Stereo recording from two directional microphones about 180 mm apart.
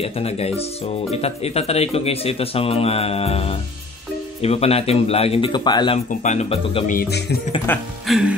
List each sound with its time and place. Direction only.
0.0 s speech: 35° left (ahead or behind)
6.0 s speech: 40° left (ahead or behind)
6.9 s music: 60° left (ahead or behind)
7.7 s speech: 10° left (ahead or behind)
8.1 s music: 5° right (ahead or behind)